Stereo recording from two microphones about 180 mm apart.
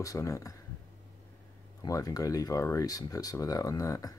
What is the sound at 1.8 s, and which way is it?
Speech, 20° left (ahead or behind).